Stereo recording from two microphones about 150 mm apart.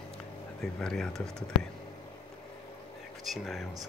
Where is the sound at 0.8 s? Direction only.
5° left (ahead or behind).